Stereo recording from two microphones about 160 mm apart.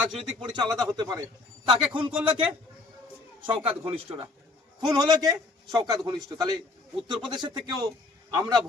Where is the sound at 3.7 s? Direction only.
35° right (ahead or behind).